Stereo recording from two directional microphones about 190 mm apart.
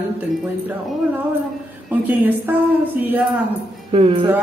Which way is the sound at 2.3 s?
10° right (ahead or behind).